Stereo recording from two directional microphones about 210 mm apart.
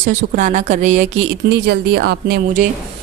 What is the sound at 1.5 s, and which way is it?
Speech, 50° right (ahead or behind).